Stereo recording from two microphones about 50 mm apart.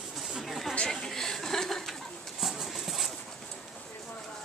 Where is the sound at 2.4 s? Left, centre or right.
Centre.